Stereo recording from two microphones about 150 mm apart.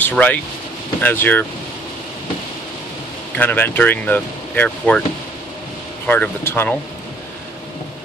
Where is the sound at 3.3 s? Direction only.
10° left (ahead or behind).